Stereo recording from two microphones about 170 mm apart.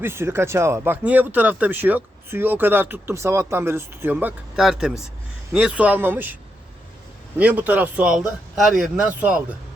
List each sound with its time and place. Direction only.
0.0 s speech: 15° right (ahead or behind)
7.3 s speech: 10° right (ahead or behind)